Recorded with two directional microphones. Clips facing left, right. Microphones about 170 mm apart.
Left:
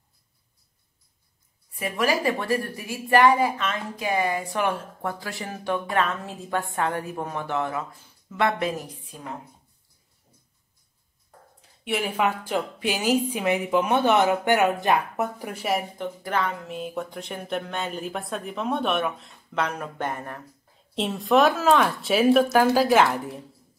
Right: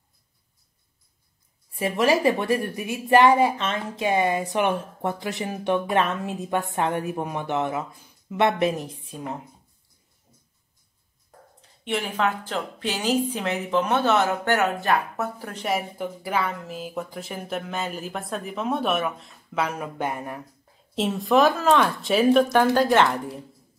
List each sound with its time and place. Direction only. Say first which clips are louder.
1.7 s a woman's voice: right 4 dB; 25° right (ahead or behind)
11.8 s a woman's voice: even; 10° left (ahead or behind)
16.0 s speech: even; 10° right (ahead or behind)